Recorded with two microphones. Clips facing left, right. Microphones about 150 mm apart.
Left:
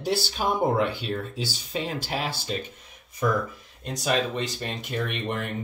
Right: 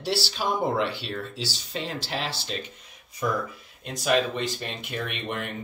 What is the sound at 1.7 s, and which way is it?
Speech, 15° left (ahead or behind).